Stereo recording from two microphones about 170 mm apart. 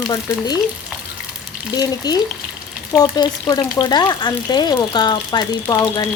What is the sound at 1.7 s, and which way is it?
Frying, 25° left (ahead or behind).